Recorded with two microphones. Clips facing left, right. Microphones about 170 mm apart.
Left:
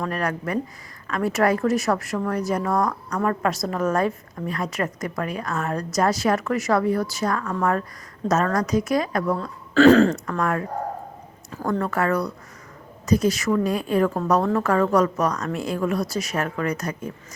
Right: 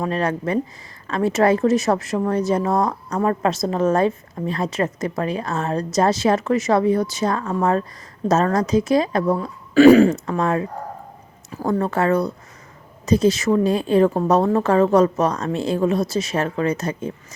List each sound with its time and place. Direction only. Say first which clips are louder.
0.0 s a woman's voice: right 4 dB; 25° right (ahead or behind)
9.7 s speech: right 4 dB; 10° right (ahead or behind)
10.2 s a woman's voice: right 3 dB; 25° right (ahead or behind)